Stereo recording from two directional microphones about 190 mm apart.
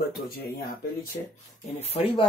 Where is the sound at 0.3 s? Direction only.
55° left (ahead or behind).